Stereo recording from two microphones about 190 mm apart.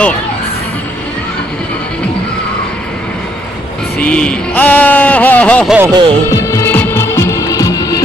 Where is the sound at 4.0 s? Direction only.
5° left (ahead or behind).